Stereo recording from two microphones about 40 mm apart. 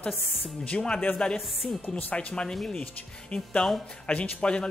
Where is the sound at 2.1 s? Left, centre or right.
Left.